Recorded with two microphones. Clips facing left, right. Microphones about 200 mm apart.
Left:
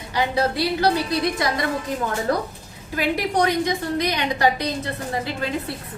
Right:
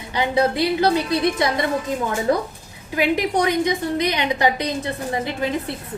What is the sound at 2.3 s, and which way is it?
Speech, 20° right (ahead or behind).